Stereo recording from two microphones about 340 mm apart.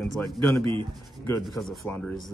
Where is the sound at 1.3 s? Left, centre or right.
Centre.